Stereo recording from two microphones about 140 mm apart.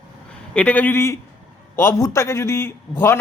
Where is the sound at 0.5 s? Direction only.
10° left (ahead or behind).